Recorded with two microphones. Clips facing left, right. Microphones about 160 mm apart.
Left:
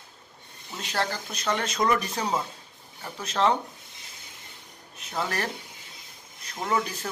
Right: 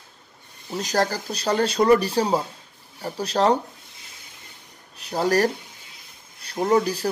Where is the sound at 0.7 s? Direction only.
35° right (ahead or behind).